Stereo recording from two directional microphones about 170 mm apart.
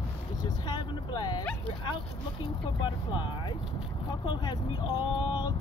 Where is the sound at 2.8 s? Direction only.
30° left (ahead or behind).